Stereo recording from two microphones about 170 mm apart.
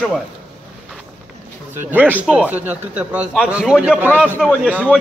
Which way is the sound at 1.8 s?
10° right (ahead or behind).